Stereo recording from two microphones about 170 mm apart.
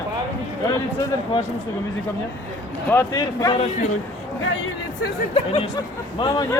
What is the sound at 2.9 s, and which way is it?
Speech, 20° left (ahead or behind).